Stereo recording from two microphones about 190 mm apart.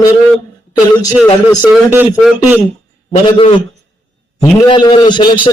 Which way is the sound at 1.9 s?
10° right (ahead or behind).